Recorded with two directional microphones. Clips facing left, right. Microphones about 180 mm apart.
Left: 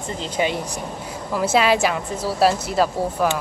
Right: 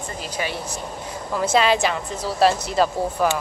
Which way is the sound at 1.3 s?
5° left (ahead or behind).